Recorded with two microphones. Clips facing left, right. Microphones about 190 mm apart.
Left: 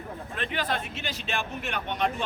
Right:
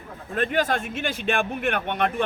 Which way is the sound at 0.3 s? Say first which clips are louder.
Right 7 dB; 45° right (ahead or behind).